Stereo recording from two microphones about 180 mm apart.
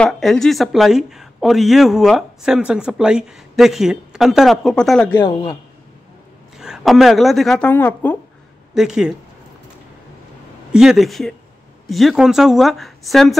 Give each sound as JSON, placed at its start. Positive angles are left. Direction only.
{"t": 0.0, "sound": "a woman's voice", "side_deg": 0}
{"t": 5.2, "sound": "speech", "side_deg": 25}
{"t": 6.6, "sound": "a woman's voice", "side_deg": 0}
{"t": 8.7, "sound": "a woman's voice", "side_deg": -5}
{"t": 10.7, "sound": "a woman's voice", "side_deg": -5}